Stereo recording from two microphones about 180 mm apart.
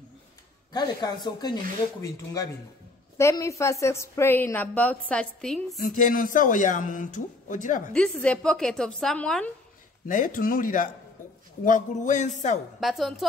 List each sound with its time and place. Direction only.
0.7 s a woman's voice: 20° left (ahead or behind); by 5.8 s 5° left (ahead or behind)
5.8 s speech: 45° left (ahead or behind)
7.9 s a woman's voice: 5° left (ahead or behind)
10.0 s speech: 50° left (ahead or behind)
12.8 s a woman's voice: centre (ahead or behind)